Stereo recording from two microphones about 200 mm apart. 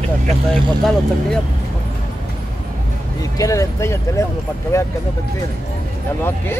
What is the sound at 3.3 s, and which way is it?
Speech, 15° left (ahead or behind).